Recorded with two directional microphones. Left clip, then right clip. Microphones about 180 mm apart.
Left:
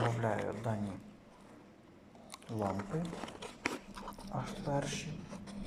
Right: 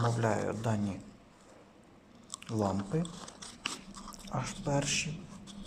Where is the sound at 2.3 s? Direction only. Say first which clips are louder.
Right 6 dB; 5° right (ahead or behind).